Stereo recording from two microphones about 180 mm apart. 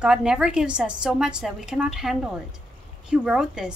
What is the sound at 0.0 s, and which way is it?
A woman's voice, 5° right (ahead or behind).